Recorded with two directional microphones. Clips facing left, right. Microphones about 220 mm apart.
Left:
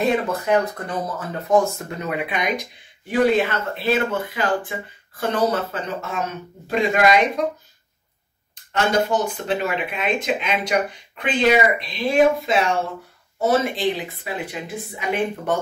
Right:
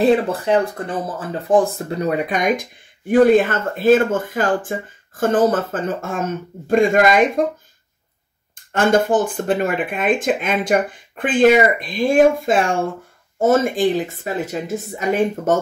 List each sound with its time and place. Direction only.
0.0 s speech: 30° right (ahead or behind); by 7.4 s 50° right (ahead or behind)
8.7 s speech: 50° right (ahead or behind)